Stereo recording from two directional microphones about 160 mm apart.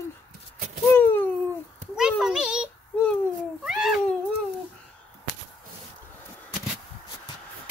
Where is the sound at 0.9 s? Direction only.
10° left (ahead or behind).